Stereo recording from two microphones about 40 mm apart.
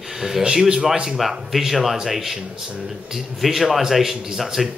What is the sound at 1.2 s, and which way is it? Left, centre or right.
Speech, centre.